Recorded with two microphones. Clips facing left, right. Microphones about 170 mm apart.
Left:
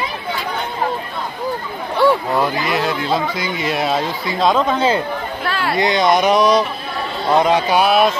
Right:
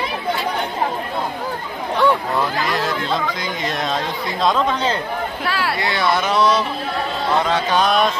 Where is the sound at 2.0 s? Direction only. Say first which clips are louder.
Left 3 dB; 5° left (ahead or behind).